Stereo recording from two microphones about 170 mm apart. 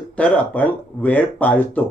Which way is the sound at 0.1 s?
10° left (ahead or behind).